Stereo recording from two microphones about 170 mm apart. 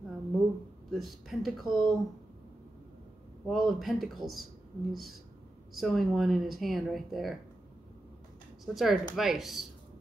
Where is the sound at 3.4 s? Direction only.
Centre (ahead or behind).